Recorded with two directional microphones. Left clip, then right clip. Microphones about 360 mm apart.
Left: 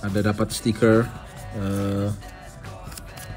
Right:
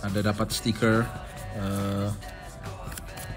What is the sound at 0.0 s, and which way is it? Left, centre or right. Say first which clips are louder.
Speech: left 4 dB; centre.